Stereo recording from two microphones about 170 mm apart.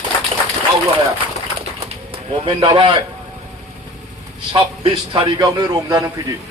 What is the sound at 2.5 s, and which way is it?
Speech, 30° right (ahead or behind).